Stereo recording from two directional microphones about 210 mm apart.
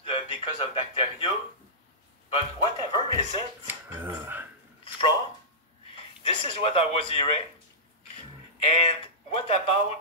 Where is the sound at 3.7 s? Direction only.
10° right (ahead or behind).